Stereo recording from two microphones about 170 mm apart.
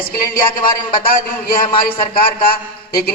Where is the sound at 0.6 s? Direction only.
55° left (ahead or behind).